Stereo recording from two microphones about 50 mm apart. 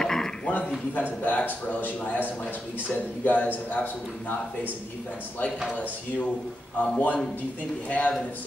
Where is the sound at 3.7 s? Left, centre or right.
Left.